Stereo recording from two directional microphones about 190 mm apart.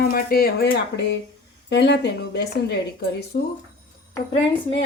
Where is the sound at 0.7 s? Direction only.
70° left (ahead or behind).